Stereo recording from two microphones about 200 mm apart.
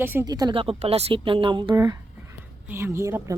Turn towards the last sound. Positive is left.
turn(degrees=-15)  # may be behind; listen again after turning